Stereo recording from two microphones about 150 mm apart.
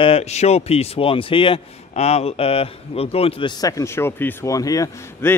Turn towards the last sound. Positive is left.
turn(degrees=20)  # may be behind; listen again after turning